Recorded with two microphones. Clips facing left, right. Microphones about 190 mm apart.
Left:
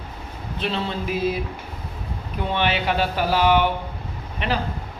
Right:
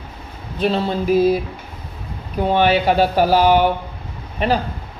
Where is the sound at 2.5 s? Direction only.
40° right (ahead or behind).